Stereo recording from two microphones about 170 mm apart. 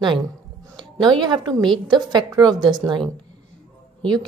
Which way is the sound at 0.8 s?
25° right (ahead or behind).